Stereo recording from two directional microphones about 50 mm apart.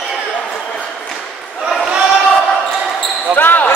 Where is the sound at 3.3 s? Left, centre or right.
Left.